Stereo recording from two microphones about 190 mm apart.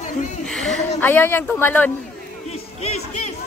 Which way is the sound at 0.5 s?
5° left (ahead or behind).